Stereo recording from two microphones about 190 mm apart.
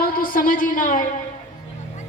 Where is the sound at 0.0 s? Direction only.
50° left (ahead or behind).